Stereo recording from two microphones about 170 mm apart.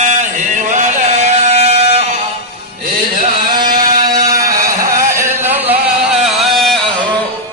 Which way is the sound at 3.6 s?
25° right (ahead or behind).